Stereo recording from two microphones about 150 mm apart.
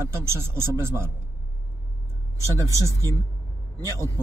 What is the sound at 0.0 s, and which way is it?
Speech, 15° right (ahead or behind).